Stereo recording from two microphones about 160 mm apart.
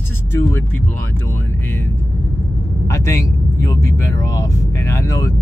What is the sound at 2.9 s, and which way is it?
Speech, 20° left (ahead or behind).